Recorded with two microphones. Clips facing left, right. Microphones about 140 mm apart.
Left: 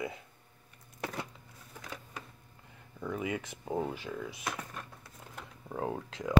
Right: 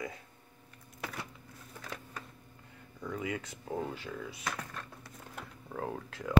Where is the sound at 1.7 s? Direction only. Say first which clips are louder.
Even; 15° left (ahead or behind).